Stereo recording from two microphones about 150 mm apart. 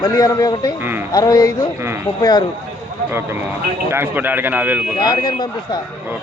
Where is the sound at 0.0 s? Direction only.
25° left (ahead or behind).